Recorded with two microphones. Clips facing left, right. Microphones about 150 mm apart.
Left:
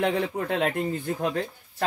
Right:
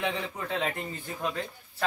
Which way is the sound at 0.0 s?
55° left (ahead or behind).